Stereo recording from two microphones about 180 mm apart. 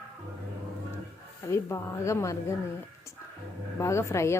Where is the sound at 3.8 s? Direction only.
15° left (ahead or behind).